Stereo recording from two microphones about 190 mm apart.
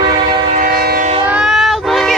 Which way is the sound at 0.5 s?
50° right (ahead or behind).